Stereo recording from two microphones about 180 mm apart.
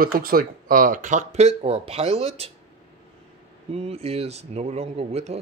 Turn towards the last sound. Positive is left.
turn(degrees=-35)  # may be behind; listen again after turning